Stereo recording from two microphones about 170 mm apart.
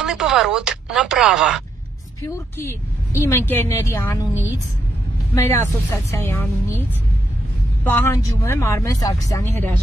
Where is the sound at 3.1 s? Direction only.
15° left (ahead or behind).